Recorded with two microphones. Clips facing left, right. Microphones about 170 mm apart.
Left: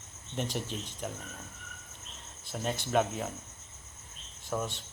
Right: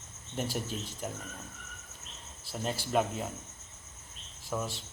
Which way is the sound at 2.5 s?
5° right (ahead or behind).